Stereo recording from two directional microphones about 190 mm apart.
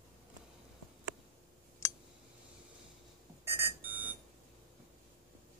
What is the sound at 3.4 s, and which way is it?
Alarm clock, 10° right (ahead or behind).